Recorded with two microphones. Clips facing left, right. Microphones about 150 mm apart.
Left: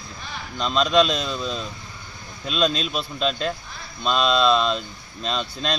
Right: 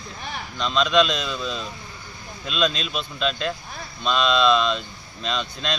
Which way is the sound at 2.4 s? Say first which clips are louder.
Left 2 dB; 40° left (ahead or behind).